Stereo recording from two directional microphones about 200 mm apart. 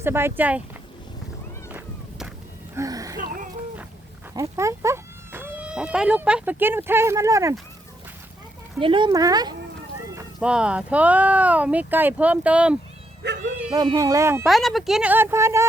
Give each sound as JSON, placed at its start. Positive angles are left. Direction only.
{"t": 0.0, "sound": "speech", "side_deg": -10}
{"t": 1.7, "sound": "a sound", "side_deg": -5}
{"t": 2.7, "sound": "a sound", "side_deg": -15}
{"t": 3.2, "sound": "a sound", "side_deg": -45}
{"t": 4.4, "sound": "speech", "side_deg": -15}
{"t": 8.8, "sound": "speech", "side_deg": -25}
{"t": 10.2, "sound": "speech", "side_deg": -5}
{"t": 13.2, "sound": "bow-wow", "side_deg": -55}
{"t": 13.7, "sound": "speech", "side_deg": -20}
{"t": 14.4, "sound": "speech", "side_deg": 0}